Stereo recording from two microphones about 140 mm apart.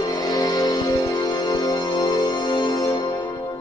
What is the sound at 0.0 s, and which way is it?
Music, 25° left (ahead or behind).